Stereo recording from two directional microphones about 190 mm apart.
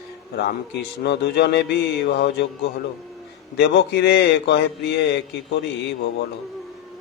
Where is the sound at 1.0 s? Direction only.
60° left (ahead or behind).